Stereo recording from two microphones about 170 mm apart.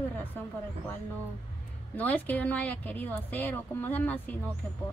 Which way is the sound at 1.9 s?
10° left (ahead or behind).